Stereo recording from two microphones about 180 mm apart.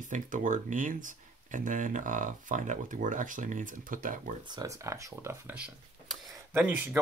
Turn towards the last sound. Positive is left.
turn(degrees=-10)  # may be behind; listen again after turning